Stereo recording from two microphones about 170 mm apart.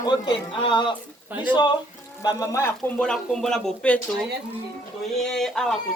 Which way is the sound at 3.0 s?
5° left (ahead or behind).